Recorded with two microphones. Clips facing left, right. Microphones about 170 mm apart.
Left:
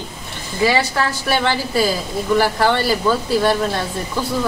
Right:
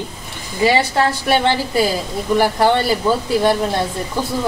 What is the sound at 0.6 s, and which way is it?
Speech, 25° right (ahead or behind).